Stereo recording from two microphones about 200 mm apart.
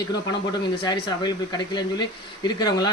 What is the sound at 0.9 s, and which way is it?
Speech, 20° left (ahead or behind).